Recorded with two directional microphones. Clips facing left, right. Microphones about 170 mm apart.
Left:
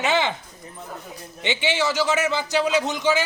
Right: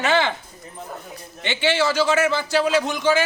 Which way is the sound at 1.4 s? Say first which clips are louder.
Right 2 dB; 15° left (ahead or behind).